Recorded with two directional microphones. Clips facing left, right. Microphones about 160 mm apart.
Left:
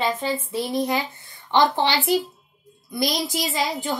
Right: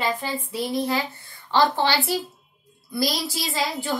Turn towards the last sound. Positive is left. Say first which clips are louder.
# left 1 dB
turn(degrees=20)  # may be behind; listen again after turning